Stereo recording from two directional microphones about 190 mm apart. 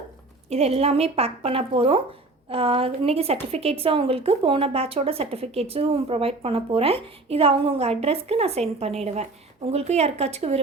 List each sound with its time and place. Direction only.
0.5 s a woman's voice: 35° right (ahead or behind)